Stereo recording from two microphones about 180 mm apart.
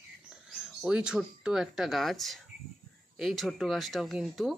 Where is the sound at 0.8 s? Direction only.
5° right (ahead or behind).